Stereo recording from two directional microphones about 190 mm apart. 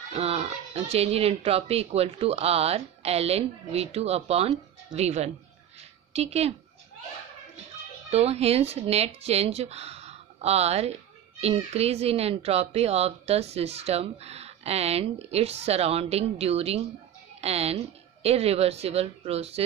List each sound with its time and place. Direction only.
0.1 s speech: 30° right (ahead or behind)
8.1 s speech: 35° right (ahead or behind)